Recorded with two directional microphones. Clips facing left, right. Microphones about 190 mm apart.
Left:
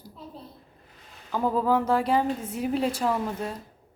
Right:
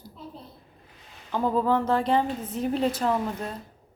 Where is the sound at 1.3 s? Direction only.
5° left (ahead or behind).